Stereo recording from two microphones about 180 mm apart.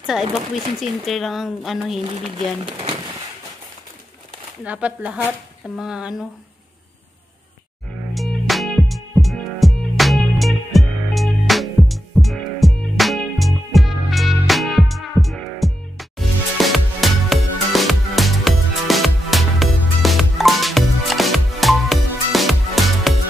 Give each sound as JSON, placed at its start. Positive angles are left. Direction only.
{"t": 0.0, "sound": "speech", "side_deg": 0}
{"t": 2.6, "sound": "speech", "side_deg": -30}
{"t": 4.6, "sound": "speech", "side_deg": -5}
{"t": 8.1, "sound": "music", "side_deg": 0}